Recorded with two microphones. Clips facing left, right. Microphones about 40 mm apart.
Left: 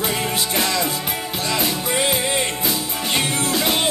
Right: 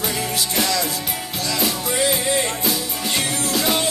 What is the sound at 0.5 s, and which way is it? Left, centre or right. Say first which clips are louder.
Music: even; left.